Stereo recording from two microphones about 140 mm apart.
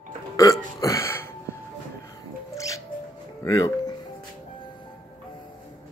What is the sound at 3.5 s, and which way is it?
Speech, 25° left (ahead or behind).